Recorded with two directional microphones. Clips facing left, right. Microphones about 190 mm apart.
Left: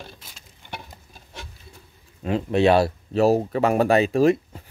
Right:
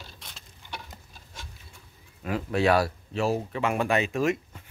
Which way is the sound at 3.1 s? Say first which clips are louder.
Left 8 dB; 40° left (ahead or behind).